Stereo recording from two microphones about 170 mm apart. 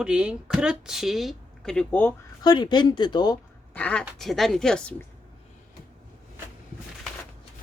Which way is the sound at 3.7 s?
10° left (ahead or behind).